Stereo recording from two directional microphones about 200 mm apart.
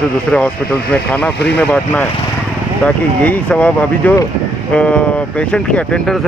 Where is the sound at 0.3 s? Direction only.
5° left (ahead or behind).